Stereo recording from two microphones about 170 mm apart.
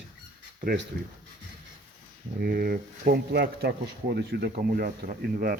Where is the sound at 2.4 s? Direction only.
60° right (ahead or behind).